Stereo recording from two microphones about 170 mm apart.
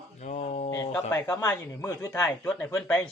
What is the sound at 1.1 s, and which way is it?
Speech, 20° left (ahead or behind).